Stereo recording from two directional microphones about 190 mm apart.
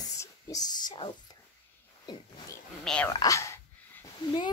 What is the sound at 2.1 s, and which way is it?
Wild animals, 20° left (ahead or behind).